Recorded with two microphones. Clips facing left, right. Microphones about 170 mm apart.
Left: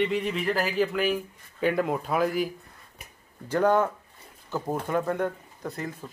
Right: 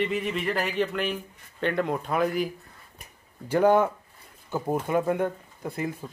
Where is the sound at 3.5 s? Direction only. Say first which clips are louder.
Right 2 dB; 10° right (ahead or behind).